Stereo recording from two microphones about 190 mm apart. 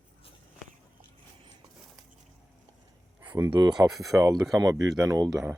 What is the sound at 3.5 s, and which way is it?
Speech, 20° right (ahead or behind).